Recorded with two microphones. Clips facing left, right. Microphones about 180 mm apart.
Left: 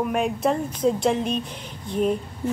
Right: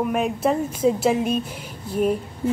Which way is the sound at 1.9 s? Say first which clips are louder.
Right 1 dB; 5° right (ahead or behind).